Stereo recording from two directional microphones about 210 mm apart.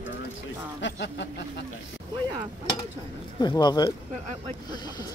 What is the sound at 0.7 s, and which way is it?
Speech, 60° left (ahead or behind).